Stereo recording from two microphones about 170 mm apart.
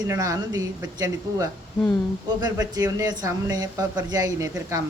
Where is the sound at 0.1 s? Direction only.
20° right (ahead or behind).